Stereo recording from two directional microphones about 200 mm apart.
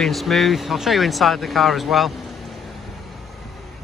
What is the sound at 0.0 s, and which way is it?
Speech, centre (ahead or behind).